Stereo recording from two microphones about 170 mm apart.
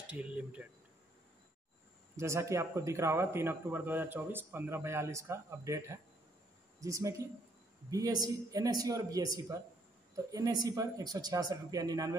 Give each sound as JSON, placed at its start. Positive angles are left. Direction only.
{"t": 0.1, "sound": "speech", "side_deg": -10}
{"t": 2.1, "sound": "speech", "side_deg": -15}